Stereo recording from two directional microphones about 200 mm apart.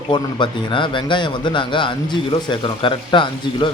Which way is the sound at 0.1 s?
25° left (ahead or behind).